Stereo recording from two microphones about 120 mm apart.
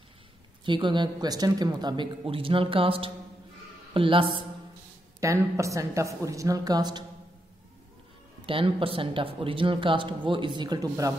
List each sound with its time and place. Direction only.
0.7 s a woman's voice: 40° right (ahead or behind)
5.2 s a woman's voice: 25° right (ahead or behind)
8.5 s speech: 45° right (ahead or behind); by 11.1 s 30° right (ahead or behind)